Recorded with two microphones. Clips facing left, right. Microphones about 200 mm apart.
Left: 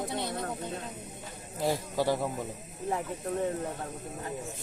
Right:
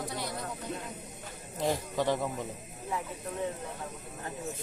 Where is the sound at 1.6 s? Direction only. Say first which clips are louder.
Left 1 dB; 10° left (ahead or behind).